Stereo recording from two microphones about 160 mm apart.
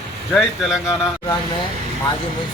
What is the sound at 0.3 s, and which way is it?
Speech, centre (ahead or behind).